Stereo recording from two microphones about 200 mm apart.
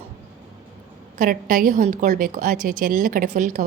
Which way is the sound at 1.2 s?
45° right (ahead or behind).